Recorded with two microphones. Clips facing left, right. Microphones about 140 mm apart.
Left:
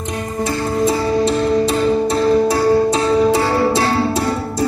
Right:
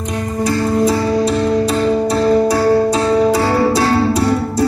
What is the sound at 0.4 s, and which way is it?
Music, 25° left (ahead or behind).